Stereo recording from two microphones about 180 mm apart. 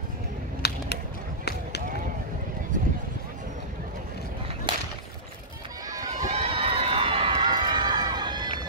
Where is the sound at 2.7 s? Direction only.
45° right (ahead or behind).